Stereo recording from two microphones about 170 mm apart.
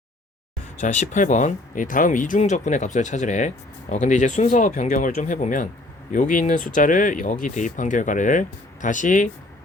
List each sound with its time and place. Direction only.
0.8 s speech: 45° left (ahead or behind)